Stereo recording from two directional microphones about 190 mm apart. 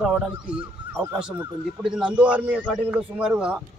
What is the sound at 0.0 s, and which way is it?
Speech, 5° right (ahead or behind).